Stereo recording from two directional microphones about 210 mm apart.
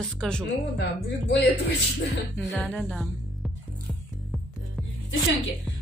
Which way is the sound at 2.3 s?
5° left (ahead or behind).